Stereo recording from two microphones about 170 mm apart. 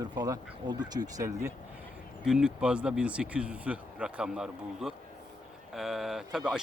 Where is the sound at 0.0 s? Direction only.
25° right (ahead or behind).